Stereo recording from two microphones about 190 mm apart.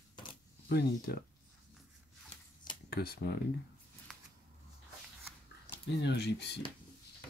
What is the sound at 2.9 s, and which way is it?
Speech, 55° left (ahead or behind).